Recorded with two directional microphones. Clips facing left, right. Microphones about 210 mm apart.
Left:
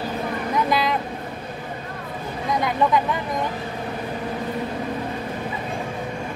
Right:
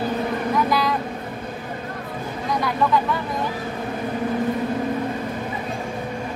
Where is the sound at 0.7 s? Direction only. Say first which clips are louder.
Even; 20° left (ahead or behind).